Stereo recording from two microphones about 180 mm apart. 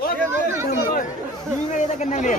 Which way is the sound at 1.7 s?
40° left (ahead or behind).